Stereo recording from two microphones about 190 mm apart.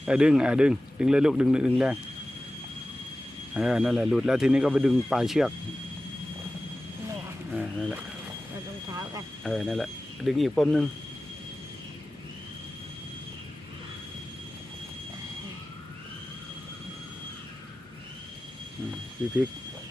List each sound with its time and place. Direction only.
0.0 s speech: 5° right (ahead or behind)
3.5 s speech: 5° right (ahead or behind)
7.5 s speech: centre (ahead or behind)
8.9 s speech: 20° right (ahead or behind)
9.4 s speech: centre (ahead or behind)